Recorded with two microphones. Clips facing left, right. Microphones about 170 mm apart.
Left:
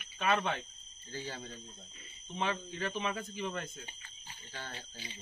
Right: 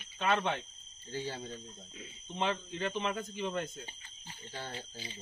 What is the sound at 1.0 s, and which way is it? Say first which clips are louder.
Speech: right 4 dB; 30° right (ahead or behind).